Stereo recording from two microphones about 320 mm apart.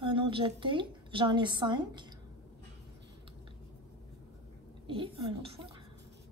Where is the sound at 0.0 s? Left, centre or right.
Centre.